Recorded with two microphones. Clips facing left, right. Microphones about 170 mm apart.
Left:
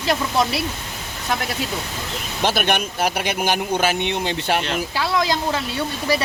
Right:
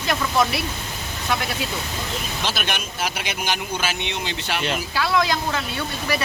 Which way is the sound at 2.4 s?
55° left (ahead or behind).